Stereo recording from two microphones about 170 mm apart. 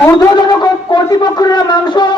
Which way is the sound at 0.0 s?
25° left (ahead or behind).